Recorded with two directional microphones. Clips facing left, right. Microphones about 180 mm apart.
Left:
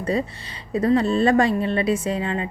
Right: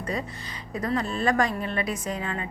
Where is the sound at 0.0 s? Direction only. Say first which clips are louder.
Left 7 dB; 30° left (ahead or behind).